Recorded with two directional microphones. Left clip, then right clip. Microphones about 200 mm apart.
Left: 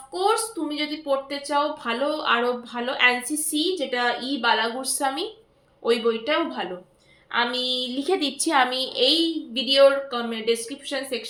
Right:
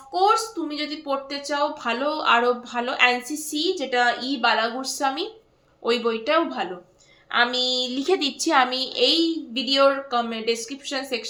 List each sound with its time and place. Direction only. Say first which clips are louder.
0.1 s a woman's voice: right 3 dB; 15° right (ahead or behind)